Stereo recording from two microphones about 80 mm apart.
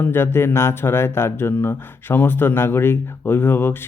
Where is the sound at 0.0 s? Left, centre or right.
Left.